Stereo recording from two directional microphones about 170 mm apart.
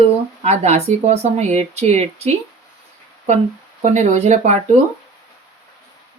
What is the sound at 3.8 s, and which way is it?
Speech, 40° right (ahead or behind).